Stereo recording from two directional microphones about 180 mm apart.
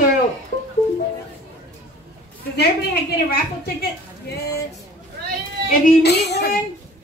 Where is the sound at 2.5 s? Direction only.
60° left (ahead or behind).